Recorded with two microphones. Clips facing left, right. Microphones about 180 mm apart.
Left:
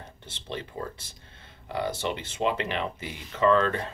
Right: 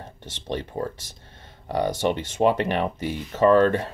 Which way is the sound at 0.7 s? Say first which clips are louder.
Right 7 dB; 45° right (ahead or behind).